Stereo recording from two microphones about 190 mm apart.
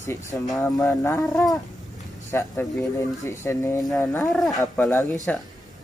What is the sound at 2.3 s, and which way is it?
Speech, 15° left (ahead or behind).